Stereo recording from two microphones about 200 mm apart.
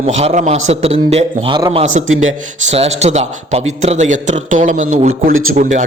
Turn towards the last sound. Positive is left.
turn(degrees=-90)